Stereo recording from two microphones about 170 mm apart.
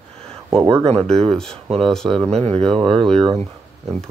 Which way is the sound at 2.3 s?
35° right (ahead or behind).